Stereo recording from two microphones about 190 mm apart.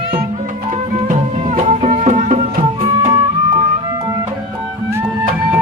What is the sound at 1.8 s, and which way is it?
Music, 35° right (ahead or behind).